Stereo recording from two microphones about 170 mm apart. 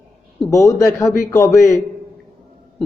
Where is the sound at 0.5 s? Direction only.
20° left (ahead or behind).